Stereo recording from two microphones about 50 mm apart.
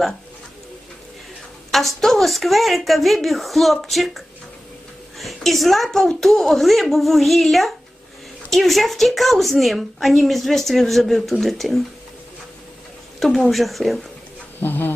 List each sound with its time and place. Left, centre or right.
1.7 s speech: centre
13.1 s a woman's voice: centre
14.6 s speech: left